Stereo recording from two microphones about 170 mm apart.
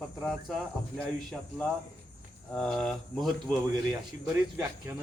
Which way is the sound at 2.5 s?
5° left (ahead or behind).